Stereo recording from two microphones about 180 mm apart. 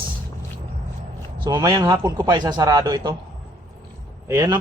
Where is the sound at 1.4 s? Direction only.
20° right (ahead or behind).